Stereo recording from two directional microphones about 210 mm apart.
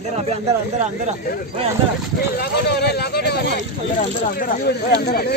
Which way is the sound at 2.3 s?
50° left (ahead or behind).